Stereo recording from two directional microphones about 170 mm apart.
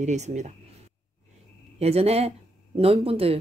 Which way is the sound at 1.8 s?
35° right (ahead or behind).